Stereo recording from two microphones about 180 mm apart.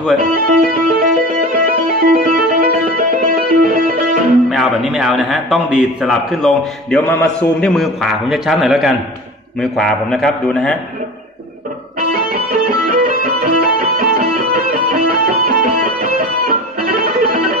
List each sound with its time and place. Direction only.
0.3 s music: 55° right (ahead or behind)
4.5 s a man's voice: 5° right (ahead or behind)
12.1 s music: 55° right (ahead or behind)